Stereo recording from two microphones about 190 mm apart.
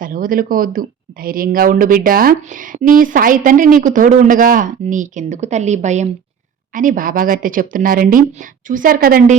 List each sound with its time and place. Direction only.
0.0 s speech: 45° right (ahead or behind)